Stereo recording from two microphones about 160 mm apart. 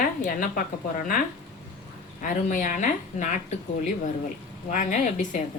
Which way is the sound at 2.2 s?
55° left (ahead or behind).